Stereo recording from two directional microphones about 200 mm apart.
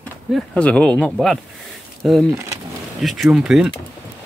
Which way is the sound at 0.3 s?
5° left (ahead or behind).